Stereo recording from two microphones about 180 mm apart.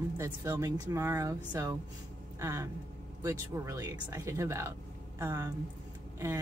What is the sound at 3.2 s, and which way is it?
Speech, 15° right (ahead or behind).